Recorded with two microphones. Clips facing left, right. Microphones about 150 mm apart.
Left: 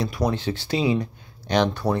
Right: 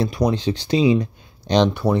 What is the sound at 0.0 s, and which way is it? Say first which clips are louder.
Speech: right 4 dB; 20° right (ahead or behind).